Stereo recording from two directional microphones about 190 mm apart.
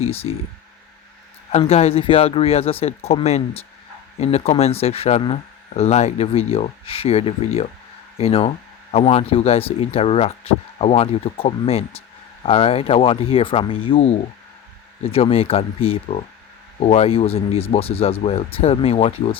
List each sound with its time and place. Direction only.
0.0 s speech: 30° left (ahead or behind)
1.5 s speech: 35° left (ahead or behind)